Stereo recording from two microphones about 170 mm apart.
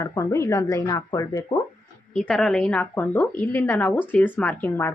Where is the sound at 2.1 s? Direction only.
5° left (ahead or behind).